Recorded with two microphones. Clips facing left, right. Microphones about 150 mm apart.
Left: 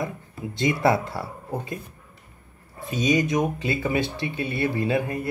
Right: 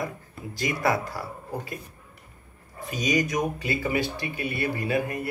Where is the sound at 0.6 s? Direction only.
25° left (ahead or behind).